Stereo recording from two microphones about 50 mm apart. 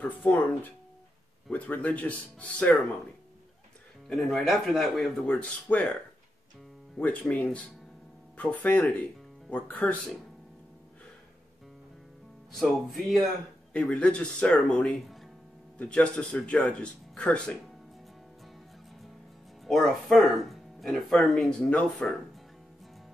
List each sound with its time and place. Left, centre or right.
0.2 s speech: left
4.1 s speech: centre
5.2 s speech: left
7.0 s speech: left
12.5 s speech: centre
13.7 s speech: left
19.7 s speech: centre
21.5 s speech: left